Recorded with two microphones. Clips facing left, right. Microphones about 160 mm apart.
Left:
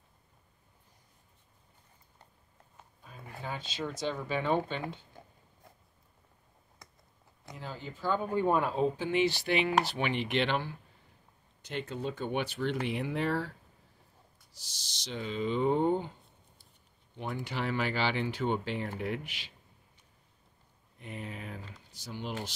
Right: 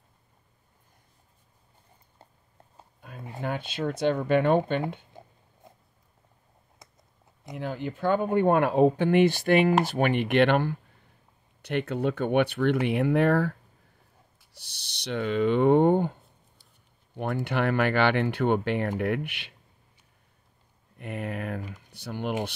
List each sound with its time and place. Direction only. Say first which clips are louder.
3.3 s speech: right 7 dB; 60° right (ahead or behind)
7.5 s speech: right 10 dB; 60° right (ahead or behind)
21.0 s speech: right 9 dB; 60° right (ahead or behind)